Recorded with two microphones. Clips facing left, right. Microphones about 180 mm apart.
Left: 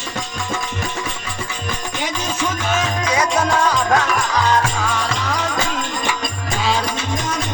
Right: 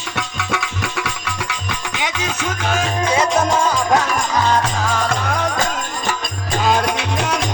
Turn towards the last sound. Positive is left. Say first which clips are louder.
# right 3 dB
turn(degrees=-65)  # may be behind; listen again after turning